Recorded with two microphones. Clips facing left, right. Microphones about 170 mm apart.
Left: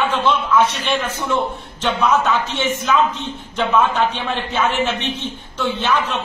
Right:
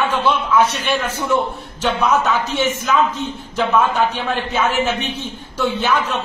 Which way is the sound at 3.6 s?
5° right (ahead or behind).